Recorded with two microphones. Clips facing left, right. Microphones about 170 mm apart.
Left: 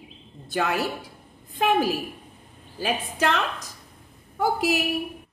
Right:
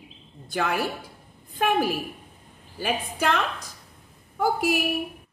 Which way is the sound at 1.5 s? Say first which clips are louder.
Left 1 dB; 10° right (ahead or behind).